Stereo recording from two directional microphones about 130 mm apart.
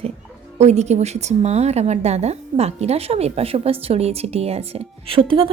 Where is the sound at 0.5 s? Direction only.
60° right (ahead or behind); by 5.5 s 45° right (ahead or behind).